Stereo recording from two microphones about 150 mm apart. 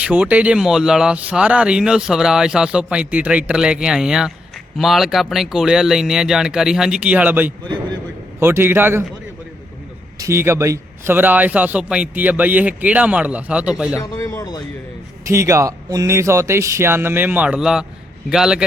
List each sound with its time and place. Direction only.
0.0 s speech: 10° right (ahead or behind)
10.2 s speech: 15° right (ahead or behind)
13.9 s speech: 20° left (ahead or behind)
15.3 s speech: 20° right (ahead or behind); by 18.6 s 5° right (ahead or behind)